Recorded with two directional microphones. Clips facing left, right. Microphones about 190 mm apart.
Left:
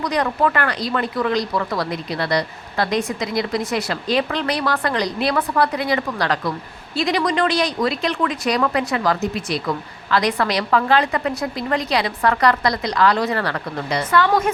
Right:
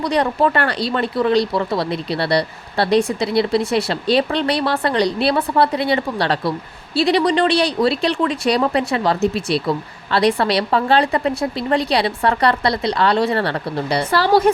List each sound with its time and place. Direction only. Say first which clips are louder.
0.0 s a woman's voice: right 3 dB; 30° right (ahead or behind)